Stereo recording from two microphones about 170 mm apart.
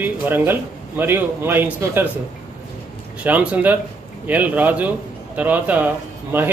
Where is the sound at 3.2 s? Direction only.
10° right (ahead or behind).